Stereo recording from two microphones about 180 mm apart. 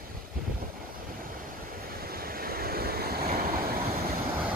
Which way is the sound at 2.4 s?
55° right (ahead or behind).